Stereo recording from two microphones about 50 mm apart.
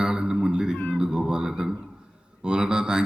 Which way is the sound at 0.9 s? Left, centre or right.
Centre.